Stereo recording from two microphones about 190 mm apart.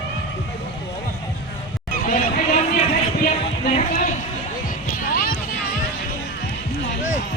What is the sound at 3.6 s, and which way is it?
Music, 40° left (ahead or behind).